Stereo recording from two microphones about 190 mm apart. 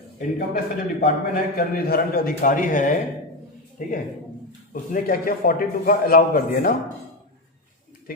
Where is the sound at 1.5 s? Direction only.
50° left (ahead or behind).